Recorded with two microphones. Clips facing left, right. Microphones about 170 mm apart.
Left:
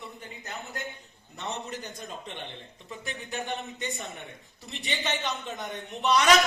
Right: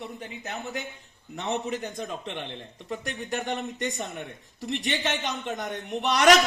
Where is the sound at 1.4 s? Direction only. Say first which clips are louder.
Right 6 dB; 70° right (ahead or behind).